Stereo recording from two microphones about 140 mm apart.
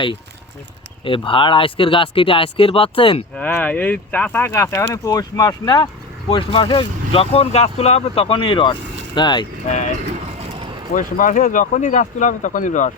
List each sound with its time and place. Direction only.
1.0 s speech: 40° left (ahead or behind)
3.3 s speech: 10° left (ahead or behind); by 9.5 s 35° left (ahead or behind)
10.9 s speech: 70° left (ahead or behind)